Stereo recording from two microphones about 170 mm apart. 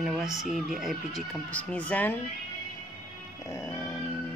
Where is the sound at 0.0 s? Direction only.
Centre (ahead or behind).